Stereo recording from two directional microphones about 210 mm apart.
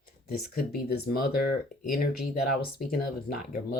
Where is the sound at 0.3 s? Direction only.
45° left (ahead or behind).